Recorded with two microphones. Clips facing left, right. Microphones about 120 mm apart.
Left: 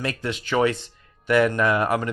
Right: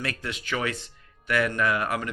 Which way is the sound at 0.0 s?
25° left (ahead or behind).